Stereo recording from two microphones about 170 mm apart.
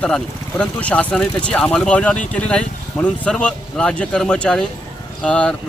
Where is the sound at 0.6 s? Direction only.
5° left (ahead or behind).